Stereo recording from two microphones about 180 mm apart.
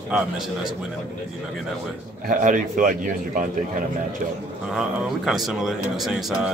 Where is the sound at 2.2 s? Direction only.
45° right (ahead or behind).